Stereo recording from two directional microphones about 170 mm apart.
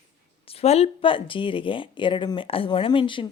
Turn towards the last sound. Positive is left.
turn(degrees=30)  # may be behind; listen again after turning